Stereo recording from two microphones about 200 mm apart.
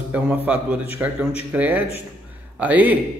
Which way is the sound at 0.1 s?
5° right (ahead or behind).